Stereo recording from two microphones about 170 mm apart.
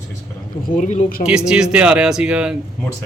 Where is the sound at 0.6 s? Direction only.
50° left (ahead or behind).